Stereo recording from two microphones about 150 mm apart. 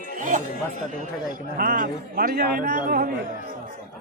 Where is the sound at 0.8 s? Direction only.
60° right (ahead or behind).